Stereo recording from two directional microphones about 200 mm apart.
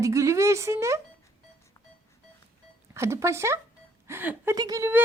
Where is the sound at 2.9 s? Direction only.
15° right (ahead or behind).